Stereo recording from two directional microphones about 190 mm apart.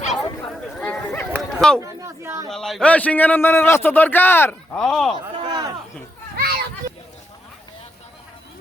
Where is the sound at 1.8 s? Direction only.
15° right (ahead or behind).